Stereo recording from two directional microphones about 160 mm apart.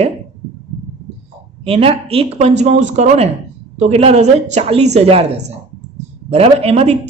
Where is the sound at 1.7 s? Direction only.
35° right (ahead or behind).